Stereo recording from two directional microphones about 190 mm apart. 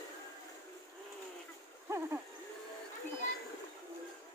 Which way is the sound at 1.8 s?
15° right (ahead or behind).